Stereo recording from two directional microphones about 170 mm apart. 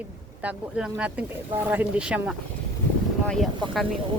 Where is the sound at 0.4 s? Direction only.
5° right (ahead or behind).